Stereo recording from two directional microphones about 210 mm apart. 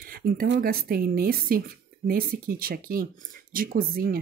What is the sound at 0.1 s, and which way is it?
Speech, 45° right (ahead or behind).